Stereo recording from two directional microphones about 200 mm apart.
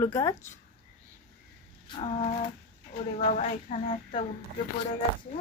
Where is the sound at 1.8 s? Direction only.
25° left (ahead or behind).